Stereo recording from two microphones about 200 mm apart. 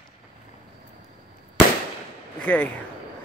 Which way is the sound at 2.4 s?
5° left (ahead or behind).